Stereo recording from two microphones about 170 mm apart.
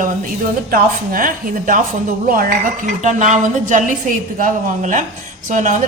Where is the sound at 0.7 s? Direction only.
55° right (ahead or behind).